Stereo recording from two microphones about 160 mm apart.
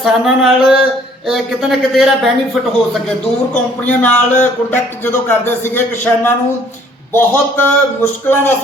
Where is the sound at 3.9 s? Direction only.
10° left (ahead or behind).